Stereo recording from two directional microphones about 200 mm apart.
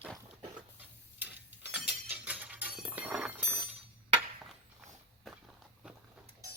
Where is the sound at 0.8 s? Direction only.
10° right (ahead or behind).